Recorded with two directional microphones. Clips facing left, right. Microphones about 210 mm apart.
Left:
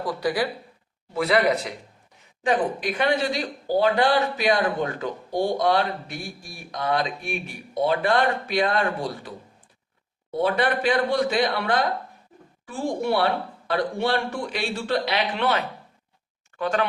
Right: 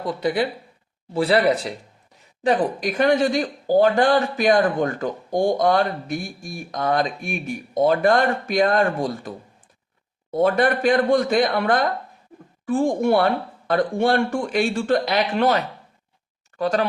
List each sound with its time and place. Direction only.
0.0 s speech: 25° right (ahead or behind); by 9.3 s 45° right (ahead or behind)
10.3 s speech: 45° right (ahead or behind)